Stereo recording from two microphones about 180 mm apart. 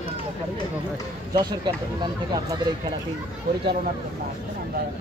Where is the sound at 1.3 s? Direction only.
25° right (ahead or behind).